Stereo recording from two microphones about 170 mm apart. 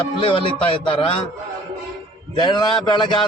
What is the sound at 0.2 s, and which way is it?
Speech, 30° left (ahead or behind).